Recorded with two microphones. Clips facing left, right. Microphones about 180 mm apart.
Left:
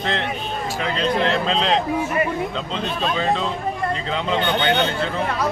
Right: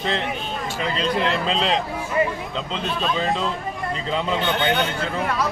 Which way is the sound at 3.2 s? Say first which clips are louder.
Left 2 dB; centre (ahead or behind).